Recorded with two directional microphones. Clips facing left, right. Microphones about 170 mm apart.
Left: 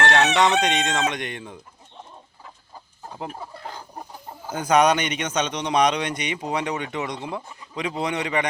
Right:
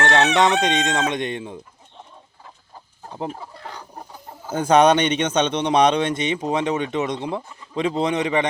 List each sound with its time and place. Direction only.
0.0 s crowing: 20° right (ahead or behind)
0.3 s a man's voice: 20° right (ahead or behind)
4.5 s a man's voice: 30° right (ahead or behind)